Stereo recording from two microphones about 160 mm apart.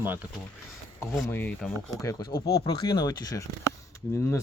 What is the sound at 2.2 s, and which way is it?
Speech, 75° left (ahead or behind).